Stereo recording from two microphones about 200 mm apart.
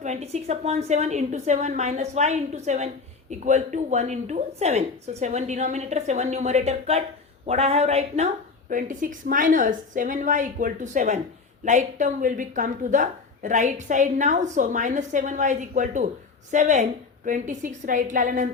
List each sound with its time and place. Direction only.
0.0 s a woman's voice: 35° right (ahead or behind)